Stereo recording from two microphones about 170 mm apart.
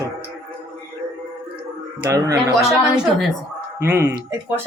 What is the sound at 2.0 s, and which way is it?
Speech, 20° right (ahead or behind).